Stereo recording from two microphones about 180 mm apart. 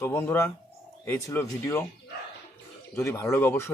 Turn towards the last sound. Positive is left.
turn(degrees=10)  # may be behind; listen again after turning